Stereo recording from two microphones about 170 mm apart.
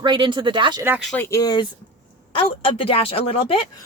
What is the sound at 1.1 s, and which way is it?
A woman's voice, 20° left (ahead or behind).